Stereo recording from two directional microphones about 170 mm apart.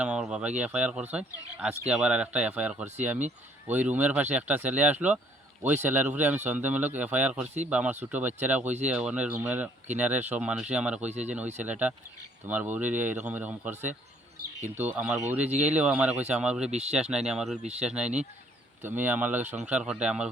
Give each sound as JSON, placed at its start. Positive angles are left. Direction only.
{"t": 0.0, "sound": "speech", "side_deg": -5}